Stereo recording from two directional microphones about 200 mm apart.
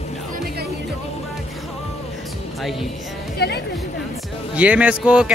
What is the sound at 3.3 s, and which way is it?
Speech, 55° left (ahead or behind).